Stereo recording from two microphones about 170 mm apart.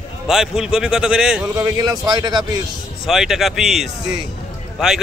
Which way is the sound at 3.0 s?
Centre (ahead or behind).